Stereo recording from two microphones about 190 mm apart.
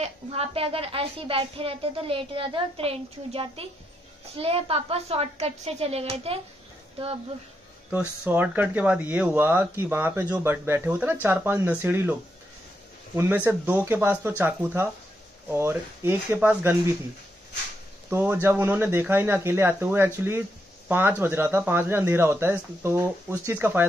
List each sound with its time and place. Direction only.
0.0 s a woman's voice: 30° right (ahead or behind)
8.3 s speech: 10° right (ahead or behind)
18.1 s speech: 10° right (ahead or behind)